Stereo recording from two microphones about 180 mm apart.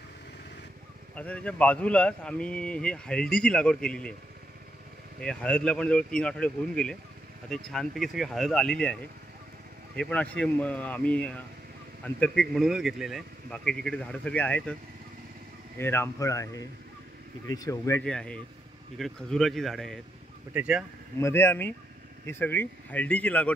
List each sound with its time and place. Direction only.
1.1 s a man's voice: 5° left (ahead or behind)
5.2 s a man's voice: 5° left (ahead or behind)
9.9 s a man's voice: 5° left (ahead or behind)
15.8 s speech: 15° left (ahead or behind)
18.0 s a man's voice: 5° left (ahead or behind)
21.2 s speech: 15° left (ahead or behind)